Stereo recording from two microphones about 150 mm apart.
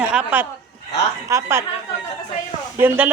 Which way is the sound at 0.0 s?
5° right (ahead or behind).